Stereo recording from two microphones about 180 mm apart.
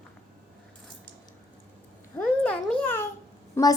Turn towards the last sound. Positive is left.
turn(degrees=15)  # may be behind; listen again after turning